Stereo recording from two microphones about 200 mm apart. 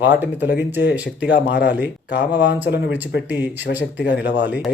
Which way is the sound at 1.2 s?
60° left (ahead or behind).